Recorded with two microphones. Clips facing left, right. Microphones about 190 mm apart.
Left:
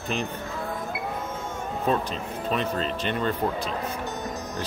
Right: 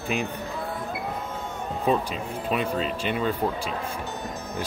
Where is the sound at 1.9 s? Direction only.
5° right (ahead or behind).